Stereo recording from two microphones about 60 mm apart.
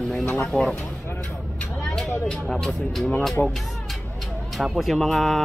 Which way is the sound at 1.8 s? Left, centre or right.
Centre.